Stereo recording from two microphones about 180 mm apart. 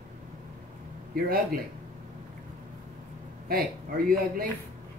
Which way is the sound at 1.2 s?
55° right (ahead or behind).